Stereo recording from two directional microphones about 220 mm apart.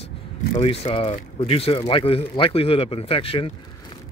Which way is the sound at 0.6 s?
25° left (ahead or behind).